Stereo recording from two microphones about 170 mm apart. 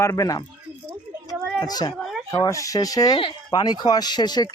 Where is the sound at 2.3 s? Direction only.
20° left (ahead or behind).